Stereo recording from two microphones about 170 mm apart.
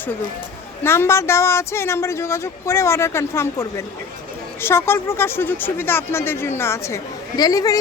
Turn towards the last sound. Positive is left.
turn(degrees=20)  # may be behind; listen again after turning